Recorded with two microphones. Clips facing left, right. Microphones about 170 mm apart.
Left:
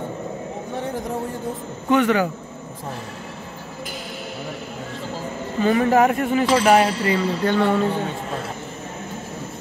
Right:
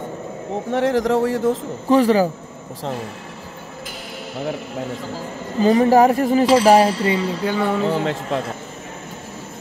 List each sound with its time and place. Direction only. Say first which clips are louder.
0.7 s speech: right 11 dB; 90° right
1.9 s speech: right 3 dB; 35° right (ahead or behind)
5.6 s speech: right 4 dB; 35° right (ahead or behind)
6.4 s a sound: right 3 dB; 30° right (ahead or behind)
7.4 s speech: left 3 dB; 5° right (ahead or behind)
7.9 s a man's voice: right 4 dB; 85° right